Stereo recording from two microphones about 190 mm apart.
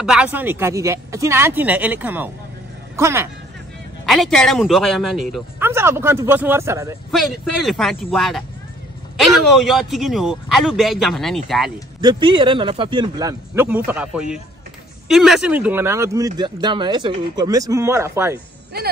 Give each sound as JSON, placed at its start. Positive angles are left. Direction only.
{"t": 0.0, "sound": "speech", "side_deg": -5}
{"t": 4.0, "sound": "a man's voice", "side_deg": 0}
{"t": 5.6, "sound": "speech", "side_deg": -15}
{"t": 7.1, "sound": "a man's voice", "side_deg": 0}
{"t": 12.0, "sound": "speech", "side_deg": -25}